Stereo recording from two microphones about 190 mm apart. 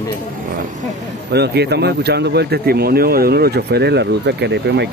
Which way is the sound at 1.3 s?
60° right (ahead or behind).